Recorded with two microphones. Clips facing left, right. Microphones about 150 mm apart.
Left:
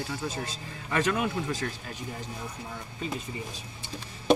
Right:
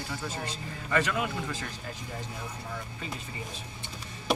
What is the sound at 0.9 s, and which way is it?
Speech, 20° left (ahead or behind).